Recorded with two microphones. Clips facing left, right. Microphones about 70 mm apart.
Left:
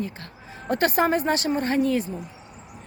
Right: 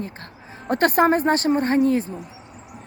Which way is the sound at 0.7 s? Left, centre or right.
Right.